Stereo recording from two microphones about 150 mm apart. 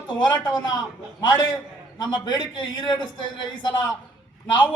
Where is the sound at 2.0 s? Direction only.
30° left (ahead or behind).